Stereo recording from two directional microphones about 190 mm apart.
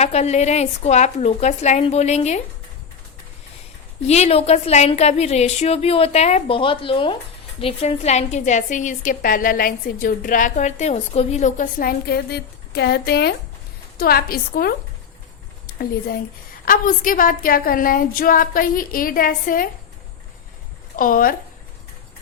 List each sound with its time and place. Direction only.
0.0 s a woman's voice: 35° left (ahead or behind)
4.0 s a woman's voice: 35° left (ahead or behind)
20.9 s a woman's voice: 45° left (ahead or behind)